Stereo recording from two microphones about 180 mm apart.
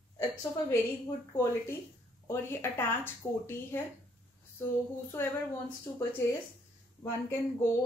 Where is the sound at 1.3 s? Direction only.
15° left (ahead or behind).